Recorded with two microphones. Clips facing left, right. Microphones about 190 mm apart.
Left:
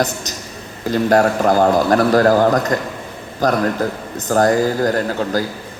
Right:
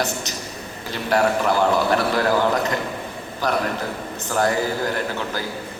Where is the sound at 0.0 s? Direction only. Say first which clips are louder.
Left 4 dB; 40° left (ahead or behind).